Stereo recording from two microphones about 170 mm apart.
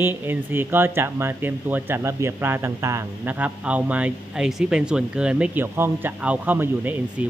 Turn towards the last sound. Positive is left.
turn(degrees=-10)  # may be behind; listen again after turning